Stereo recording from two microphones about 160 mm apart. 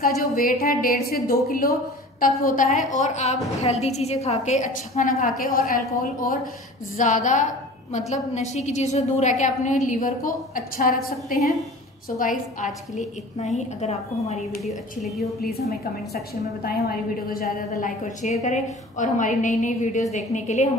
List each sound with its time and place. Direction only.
0.0 s a woman's voice: 60° left (ahead or behind); by 14.4 s 45° left (ahead or behind)
14.6 s a woman's voice: centre (ahead or behind)
17.3 s a woman's voice: 60° left (ahead or behind)